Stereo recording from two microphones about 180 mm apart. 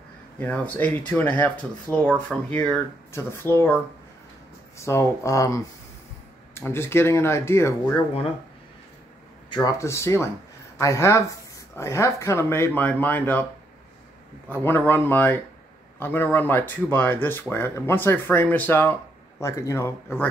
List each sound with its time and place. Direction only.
0.7 s speech: 10° left (ahead or behind)
9.5 s speech: 20° left (ahead or behind)
14.5 s speech: 10° left (ahead or behind)